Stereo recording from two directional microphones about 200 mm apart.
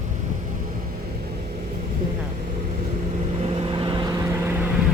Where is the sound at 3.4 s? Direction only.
25° right (ahead or behind).